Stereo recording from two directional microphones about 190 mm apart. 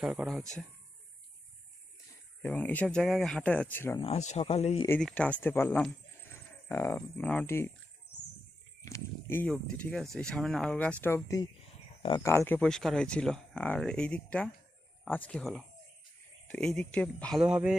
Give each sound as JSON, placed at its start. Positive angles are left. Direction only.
{"t": 0.0, "sound": "speech", "side_deg": -5}
{"t": 2.4, "sound": "speech", "side_deg": 5}
{"t": 3.9, "sound": "speech", "side_deg": 30}
{"t": 4.9, "sound": "speech", "side_deg": 5}
{"t": 8.8, "sound": "speech", "side_deg": 15}
{"t": 12.5, "sound": "speech", "side_deg": 5}
{"t": 17.4, "sound": "speech", "side_deg": -5}